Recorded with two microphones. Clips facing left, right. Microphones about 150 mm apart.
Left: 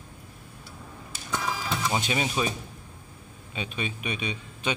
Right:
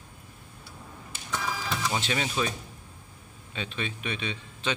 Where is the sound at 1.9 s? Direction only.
15° left (ahead or behind).